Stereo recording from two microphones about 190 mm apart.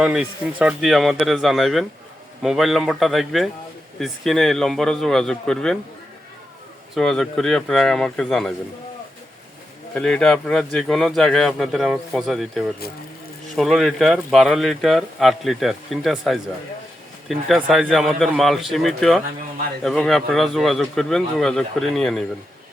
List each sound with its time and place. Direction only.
0.0 s speech: 5° right (ahead or behind)
6.9 s speech: centre (ahead or behind)
9.9 s speech: 5° left (ahead or behind)
12.8 s speech: 55° left (ahead or behind)
13.6 s speech: centre (ahead or behind)